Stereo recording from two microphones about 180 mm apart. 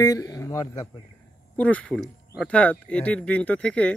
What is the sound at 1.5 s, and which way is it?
Speech, 10° left (ahead or behind).